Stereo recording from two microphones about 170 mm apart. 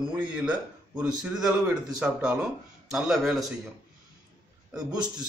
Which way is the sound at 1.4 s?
20° right (ahead or behind).